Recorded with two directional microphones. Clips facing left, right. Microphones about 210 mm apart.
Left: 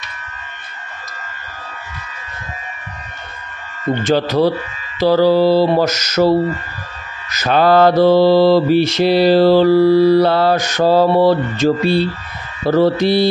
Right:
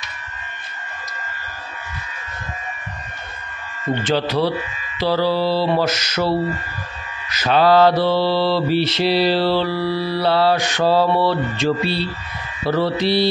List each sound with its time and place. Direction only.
4.0 s mantra: 45° left (ahead or behind)